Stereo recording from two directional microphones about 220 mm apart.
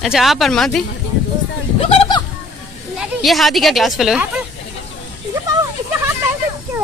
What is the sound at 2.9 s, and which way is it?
Speech, centre (ahead or behind).